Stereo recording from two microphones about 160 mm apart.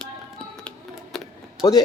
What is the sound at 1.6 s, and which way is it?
Speech, 25° left (ahead or behind).